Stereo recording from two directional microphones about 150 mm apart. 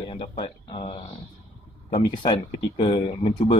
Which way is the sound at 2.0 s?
30° left (ahead or behind).